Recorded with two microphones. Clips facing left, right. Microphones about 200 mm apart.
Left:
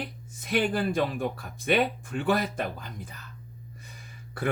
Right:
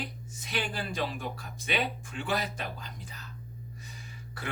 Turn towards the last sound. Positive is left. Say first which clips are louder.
# left 7 dB
turn(degrees=55)  # may be behind; listen again after turning